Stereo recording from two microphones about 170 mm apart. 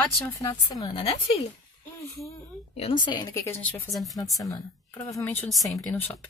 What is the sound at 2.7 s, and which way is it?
Speech, 35° left (ahead or behind).